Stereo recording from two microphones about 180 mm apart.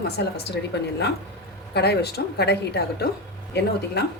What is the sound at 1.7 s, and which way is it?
A woman's voice, 65° left (ahead or behind).